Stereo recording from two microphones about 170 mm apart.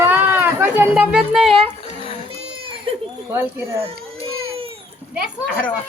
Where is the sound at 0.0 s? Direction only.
10° right (ahead or behind).